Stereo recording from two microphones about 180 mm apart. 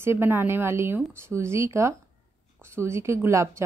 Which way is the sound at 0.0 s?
15° right (ahead or behind).